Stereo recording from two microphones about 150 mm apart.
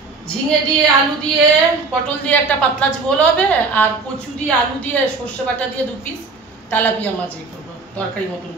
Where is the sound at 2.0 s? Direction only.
10° left (ahead or behind).